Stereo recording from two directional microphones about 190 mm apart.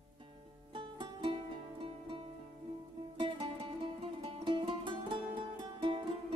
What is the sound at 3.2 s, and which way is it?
Music, 30° right (ahead or behind).